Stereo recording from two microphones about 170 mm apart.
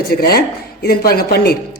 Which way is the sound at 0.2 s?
65° left (ahead or behind).